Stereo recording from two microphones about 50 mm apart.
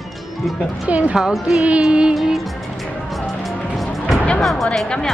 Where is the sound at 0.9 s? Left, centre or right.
Right.